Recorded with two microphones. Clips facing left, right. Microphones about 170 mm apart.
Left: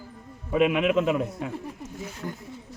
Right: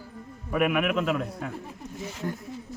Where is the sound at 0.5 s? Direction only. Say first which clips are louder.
Left 3 dB; 25° left (ahead or behind).